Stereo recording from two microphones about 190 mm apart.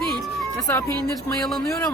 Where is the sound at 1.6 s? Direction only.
15° left (ahead or behind).